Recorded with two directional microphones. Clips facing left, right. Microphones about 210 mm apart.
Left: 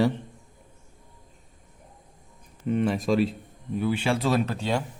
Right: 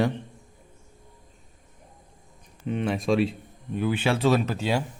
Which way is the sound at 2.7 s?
5° left (ahead or behind).